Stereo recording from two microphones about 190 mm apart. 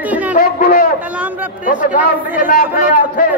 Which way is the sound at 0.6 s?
50° left (ahead or behind).